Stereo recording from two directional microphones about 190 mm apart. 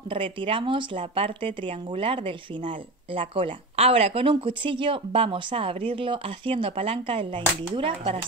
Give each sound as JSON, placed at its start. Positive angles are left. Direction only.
{"t": 0.1, "sound": "speech", "side_deg": -25}